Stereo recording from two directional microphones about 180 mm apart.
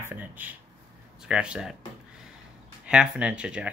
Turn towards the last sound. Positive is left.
turn(degrees=-5)  # may be behind; listen again after turning